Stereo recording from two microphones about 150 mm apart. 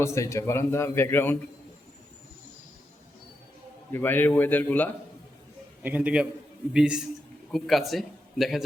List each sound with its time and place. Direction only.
0.0 s a man's voice: 20° left (ahead or behind)
3.9 s a man's voice: 15° left (ahead or behind)
5.8 s a man's voice: 10° right (ahead or behind)